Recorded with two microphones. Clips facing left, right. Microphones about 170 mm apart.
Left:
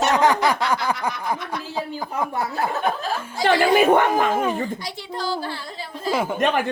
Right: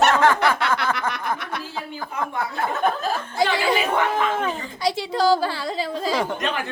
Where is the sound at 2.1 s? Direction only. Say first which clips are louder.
Left 2 dB; 40° left (ahead or behind).